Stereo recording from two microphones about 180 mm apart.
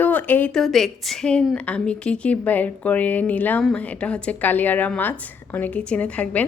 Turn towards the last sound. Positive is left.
turn(degrees=10)  # may be behind; listen again after turning